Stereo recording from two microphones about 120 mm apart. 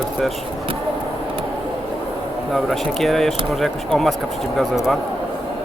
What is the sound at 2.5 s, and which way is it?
Speech, centre (ahead or behind).